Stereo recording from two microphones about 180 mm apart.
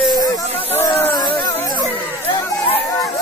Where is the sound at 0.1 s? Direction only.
20° left (ahead or behind).